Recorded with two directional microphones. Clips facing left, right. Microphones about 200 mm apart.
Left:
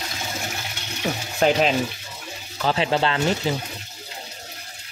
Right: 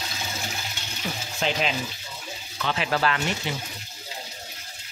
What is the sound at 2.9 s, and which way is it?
Speech, 25° left (ahead or behind).